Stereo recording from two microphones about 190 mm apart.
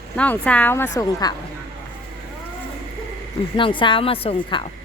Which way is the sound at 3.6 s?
25° left (ahead or behind).